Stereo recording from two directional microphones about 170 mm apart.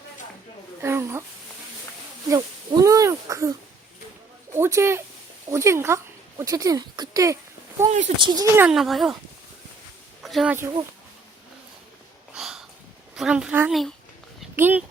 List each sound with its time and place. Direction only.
0.8 s a sound: 15° right (ahead or behind)
2.3 s a sound: 20° right (ahead or behind)
4.5 s speech: 15° right (ahead or behind)
7.9 s speech: 40° right (ahead or behind)
8.2 s speech: 25° right (ahead or behind)
8.5 s speech: 5° right (ahead or behind)
10.2 s speech: centre (ahead or behind)
12.4 s a sound: centre (ahead or behind)
13.1 s speech: 5° right (ahead or behind)